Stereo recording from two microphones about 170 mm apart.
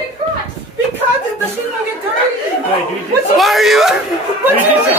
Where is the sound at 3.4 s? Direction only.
Centre (ahead or behind).